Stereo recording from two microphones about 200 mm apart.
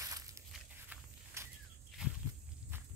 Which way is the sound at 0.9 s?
15° right (ahead or behind).